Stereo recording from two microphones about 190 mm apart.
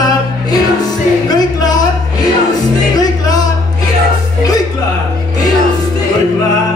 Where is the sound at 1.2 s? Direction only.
20° left (ahead or behind).